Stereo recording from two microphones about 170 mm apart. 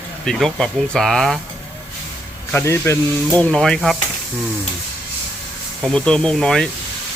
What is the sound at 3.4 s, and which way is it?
Speech, 5° left (ahead or behind).